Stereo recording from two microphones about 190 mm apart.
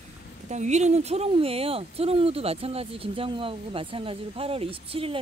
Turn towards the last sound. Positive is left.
turn(degrees=-30)  # may be behind; listen again after turning